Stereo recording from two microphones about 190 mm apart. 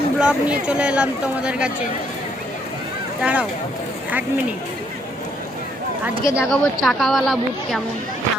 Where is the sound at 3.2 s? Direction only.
5° right (ahead or behind).